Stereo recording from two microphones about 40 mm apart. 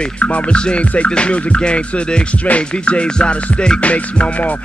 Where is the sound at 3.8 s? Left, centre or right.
Left.